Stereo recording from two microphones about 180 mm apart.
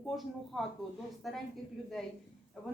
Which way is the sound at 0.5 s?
Centre (ahead or behind).